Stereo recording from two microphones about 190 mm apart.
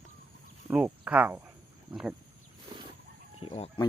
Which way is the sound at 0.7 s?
5° right (ahead or behind).